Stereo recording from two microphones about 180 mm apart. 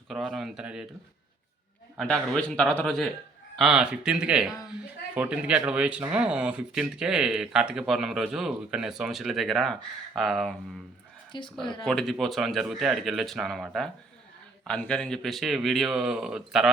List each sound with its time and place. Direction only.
0.1 s speech: centre (ahead or behind)
2.0 s speech: 5° left (ahead or behind)
11.3 s a woman's voice: 25° left (ahead or behind)
11.8 s speech: 5° left (ahead or behind)